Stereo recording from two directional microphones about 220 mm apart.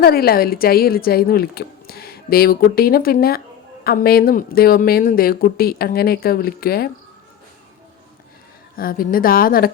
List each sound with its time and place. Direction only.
0.0 s a woman's voice: 45° left (ahead or behind)
8.8 s a woman's voice: 40° left (ahead or behind)